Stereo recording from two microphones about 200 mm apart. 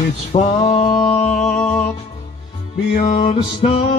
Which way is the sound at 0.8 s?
25° left (ahead or behind).